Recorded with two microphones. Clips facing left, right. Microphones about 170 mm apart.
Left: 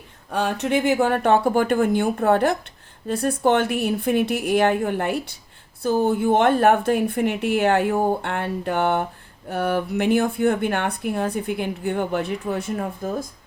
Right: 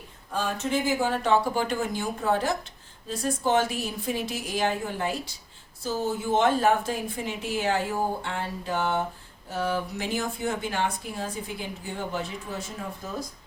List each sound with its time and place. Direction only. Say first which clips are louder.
0.3 s speech: left 6 dB; 70° left (ahead or behind); by 13.2 s 50° left (ahead or behind)